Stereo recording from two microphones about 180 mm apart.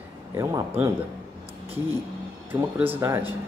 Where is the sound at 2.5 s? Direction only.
10° right (ahead or behind).